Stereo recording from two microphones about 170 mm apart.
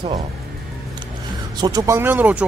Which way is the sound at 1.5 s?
20° right (ahead or behind).